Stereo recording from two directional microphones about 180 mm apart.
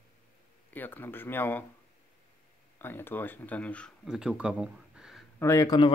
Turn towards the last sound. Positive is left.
turn(degrees=20)  # may be behind; listen again after turning